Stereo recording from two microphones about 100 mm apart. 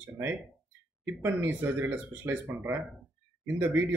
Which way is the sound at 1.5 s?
15° right (ahead or behind).